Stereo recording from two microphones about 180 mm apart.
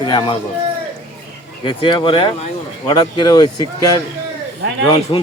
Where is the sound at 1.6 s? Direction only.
25° left (ahead or behind).